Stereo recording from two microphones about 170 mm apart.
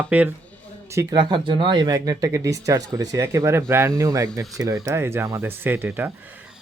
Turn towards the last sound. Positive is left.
turn(degrees=-15)  # may be behind; listen again after turning